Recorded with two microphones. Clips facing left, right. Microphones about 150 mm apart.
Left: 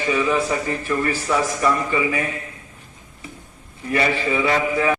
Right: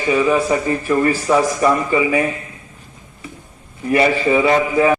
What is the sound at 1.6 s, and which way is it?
Speech, 35° right (ahead or behind).